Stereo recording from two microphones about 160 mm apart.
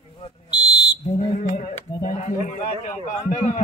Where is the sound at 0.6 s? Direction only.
25° left (ahead or behind).